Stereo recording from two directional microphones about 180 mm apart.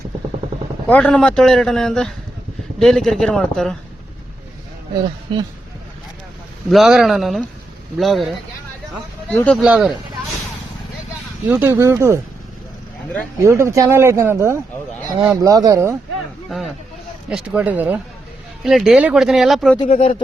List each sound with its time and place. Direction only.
0.9 s a man's voice: 5° left (ahead or behind)
5.3 s speech: 30° right (ahead or behind)
6.7 s a man's voice: centre (ahead or behind)
9.6 s a man's voice: 5° right (ahead or behind)
11.4 s speech: 10° right (ahead or behind)
13.4 s speech: 15° right (ahead or behind)
17.2 s a man's voice: 5° right (ahead or behind)
19.8 s speech: 35° left (ahead or behind)